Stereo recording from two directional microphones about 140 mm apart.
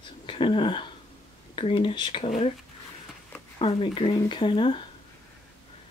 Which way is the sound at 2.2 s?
50° left (ahead or behind).